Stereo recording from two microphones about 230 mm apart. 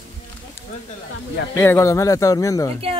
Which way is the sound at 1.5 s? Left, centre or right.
Centre.